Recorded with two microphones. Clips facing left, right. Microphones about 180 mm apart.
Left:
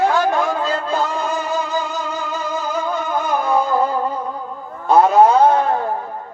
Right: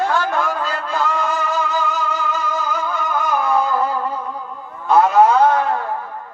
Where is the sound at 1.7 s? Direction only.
35° left (ahead or behind).